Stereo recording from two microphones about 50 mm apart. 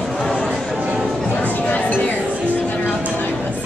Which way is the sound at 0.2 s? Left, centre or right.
Centre.